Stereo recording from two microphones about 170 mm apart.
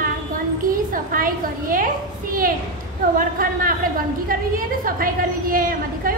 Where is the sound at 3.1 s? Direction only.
55° right (ahead or behind).